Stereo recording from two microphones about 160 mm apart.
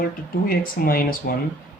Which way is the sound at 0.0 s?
65° left (ahead or behind).